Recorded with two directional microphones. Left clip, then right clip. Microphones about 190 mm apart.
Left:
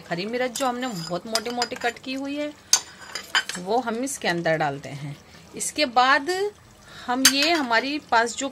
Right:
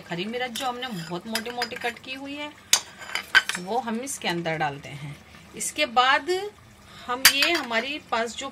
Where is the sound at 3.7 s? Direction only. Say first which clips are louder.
Left 7 dB; 30° left (ahead or behind).